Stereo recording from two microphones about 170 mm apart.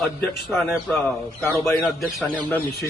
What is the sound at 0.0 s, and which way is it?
A man's voice, centre (ahead or behind).